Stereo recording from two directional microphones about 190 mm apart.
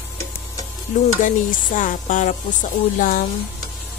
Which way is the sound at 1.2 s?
45° left (ahead or behind).